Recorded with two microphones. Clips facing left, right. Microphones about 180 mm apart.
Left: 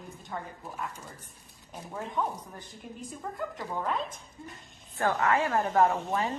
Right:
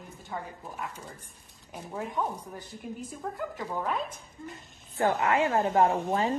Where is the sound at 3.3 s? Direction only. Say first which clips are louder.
Even; 5° right (ahead or behind).